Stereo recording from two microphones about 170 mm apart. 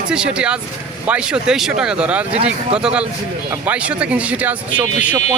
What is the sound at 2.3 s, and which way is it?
Speech, 35° right (ahead or behind).